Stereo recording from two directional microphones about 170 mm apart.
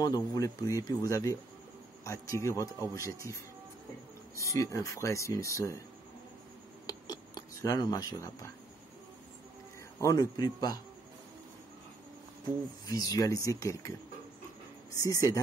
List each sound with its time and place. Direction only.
0.0 s speech: 20° left (ahead or behind)
4.4 s speech: 15° left (ahead or behind)
6.9 s a sound: 25° left (ahead or behind)
9.9 s speech: 20° left (ahead or behind)
12.4 s speech: 20° left (ahead or behind)
15.0 s speech: 20° left (ahead or behind)